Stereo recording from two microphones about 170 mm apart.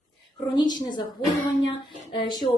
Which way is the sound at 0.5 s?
25° left (ahead or behind).